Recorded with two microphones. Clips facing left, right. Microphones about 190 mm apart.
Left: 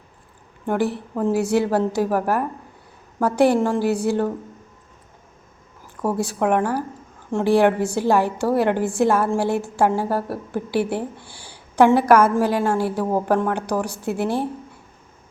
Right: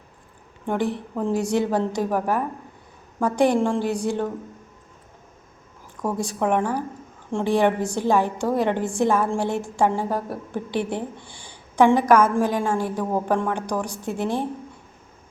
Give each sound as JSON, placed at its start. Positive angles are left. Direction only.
{"t": 0.7, "sound": "a woman's voice", "side_deg": 5}
{"t": 6.0, "sound": "a woman's voice", "side_deg": 5}